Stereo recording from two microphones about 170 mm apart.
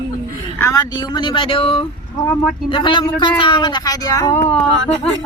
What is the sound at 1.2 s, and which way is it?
Speech, 30° left (ahead or behind).